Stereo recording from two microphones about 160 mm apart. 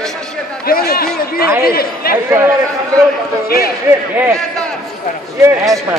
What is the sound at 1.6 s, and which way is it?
Speech, 70° left (ahead or behind).